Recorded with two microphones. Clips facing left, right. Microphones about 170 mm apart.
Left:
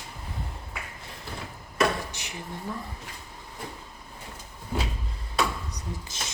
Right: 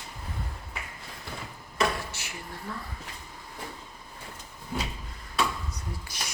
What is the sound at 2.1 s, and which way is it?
Drawer open or close, 15° left (ahead or behind).